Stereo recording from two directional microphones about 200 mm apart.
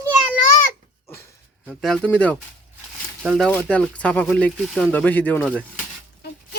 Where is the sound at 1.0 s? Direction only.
15° left (ahead or behind).